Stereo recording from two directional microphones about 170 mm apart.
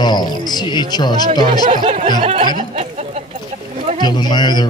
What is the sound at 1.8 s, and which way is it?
Speech, 45° right (ahead or behind).